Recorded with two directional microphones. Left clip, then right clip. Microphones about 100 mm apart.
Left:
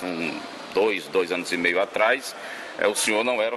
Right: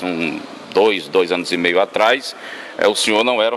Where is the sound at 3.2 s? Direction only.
30° right (ahead or behind).